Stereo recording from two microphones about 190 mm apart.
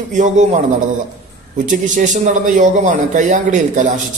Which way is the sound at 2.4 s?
40° right (ahead or behind).